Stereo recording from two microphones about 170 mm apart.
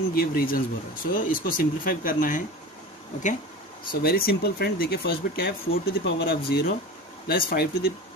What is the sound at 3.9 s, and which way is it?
Speech, 60° left (ahead or behind).